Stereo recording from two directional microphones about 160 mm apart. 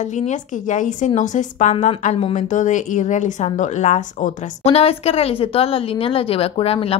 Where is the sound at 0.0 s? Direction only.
50° left (ahead or behind).